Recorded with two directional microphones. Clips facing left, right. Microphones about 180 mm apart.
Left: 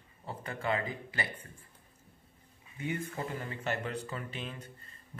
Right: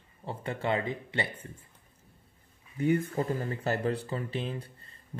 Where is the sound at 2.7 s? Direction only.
40° right (ahead or behind).